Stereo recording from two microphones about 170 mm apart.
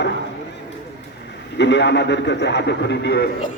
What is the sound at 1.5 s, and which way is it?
A man's voice, 90° left.